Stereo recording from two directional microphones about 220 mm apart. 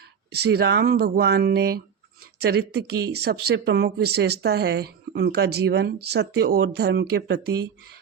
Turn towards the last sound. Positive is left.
turn(degrees=-50)  # may be behind; listen again after turning